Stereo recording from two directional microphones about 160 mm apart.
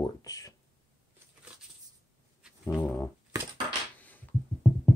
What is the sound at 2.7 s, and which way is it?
Speech, 10° left (ahead or behind).